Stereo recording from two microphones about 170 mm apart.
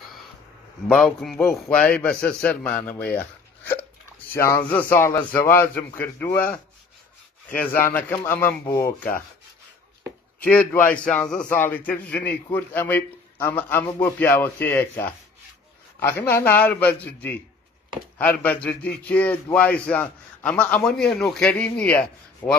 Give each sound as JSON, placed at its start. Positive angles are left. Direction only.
{"t": 0.8, "sound": "speech", "side_deg": 5}
{"t": 10.4, "sound": "speech", "side_deg": 10}